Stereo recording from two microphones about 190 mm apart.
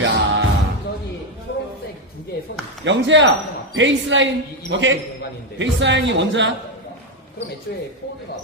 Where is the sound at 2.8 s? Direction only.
70° right (ahead or behind).